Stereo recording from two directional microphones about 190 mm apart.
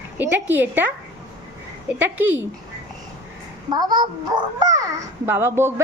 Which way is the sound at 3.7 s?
20° right (ahead or behind).